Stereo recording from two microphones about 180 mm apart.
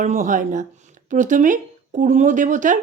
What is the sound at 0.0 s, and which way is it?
Speech, 45° right (ahead or behind).